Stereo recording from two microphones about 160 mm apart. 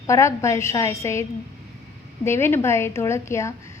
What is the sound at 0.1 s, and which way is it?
A woman's voice, 20° left (ahead or behind).